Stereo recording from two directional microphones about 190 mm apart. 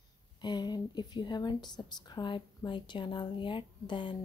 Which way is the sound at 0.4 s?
20° left (ahead or behind).